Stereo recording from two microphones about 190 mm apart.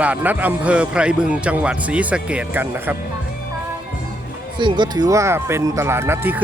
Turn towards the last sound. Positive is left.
turn(degrees=-10)  # may be behind; listen again after turning